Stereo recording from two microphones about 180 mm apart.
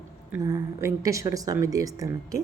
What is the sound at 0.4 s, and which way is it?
A woman's voice, 15° right (ahead or behind).